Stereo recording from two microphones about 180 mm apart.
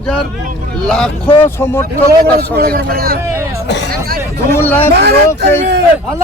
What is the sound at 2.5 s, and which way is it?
Speech, 55° right (ahead or behind).